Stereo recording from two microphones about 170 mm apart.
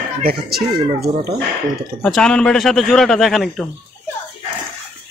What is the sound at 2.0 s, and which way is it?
Speech, 5° left (ahead or behind).